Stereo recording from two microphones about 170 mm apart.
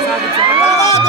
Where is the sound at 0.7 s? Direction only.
40° left (ahead or behind).